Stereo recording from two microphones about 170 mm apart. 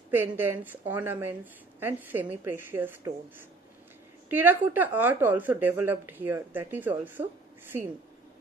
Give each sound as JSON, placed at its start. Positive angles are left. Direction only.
{"t": 0.1, "sound": "a woman's voice", "side_deg": -15}
{"t": 4.3, "sound": "a woman's voice", "side_deg": -10}